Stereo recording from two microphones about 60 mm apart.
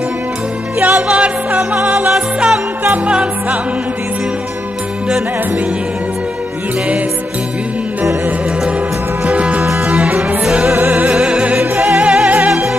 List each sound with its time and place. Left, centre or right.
0.9 s music: centre
9.2 s music: centre
11.1 s music: centre
12.4 s music: centre